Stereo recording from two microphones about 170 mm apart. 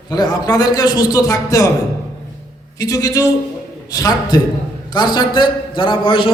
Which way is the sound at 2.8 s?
20° left (ahead or behind).